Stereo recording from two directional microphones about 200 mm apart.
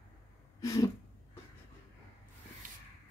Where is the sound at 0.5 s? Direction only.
15° left (ahead or behind).